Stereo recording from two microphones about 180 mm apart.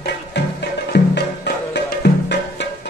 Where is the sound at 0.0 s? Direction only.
70° left (ahead or behind).